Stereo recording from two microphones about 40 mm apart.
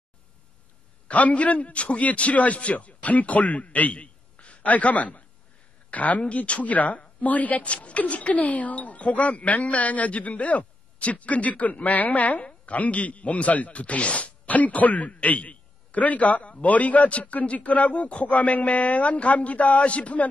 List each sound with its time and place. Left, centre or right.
1.0 s a man's voice: left